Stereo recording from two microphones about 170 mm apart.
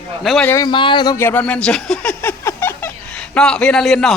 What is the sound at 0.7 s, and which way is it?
Speech, 30° left (ahead or behind).